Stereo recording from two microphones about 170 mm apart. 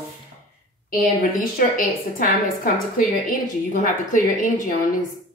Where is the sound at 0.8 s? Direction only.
55° left (ahead or behind).